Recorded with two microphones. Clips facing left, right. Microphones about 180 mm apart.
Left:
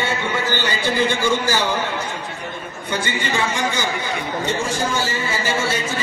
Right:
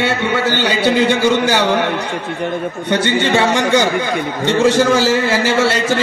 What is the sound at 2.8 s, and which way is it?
A man's voice, 75° right (ahead or behind).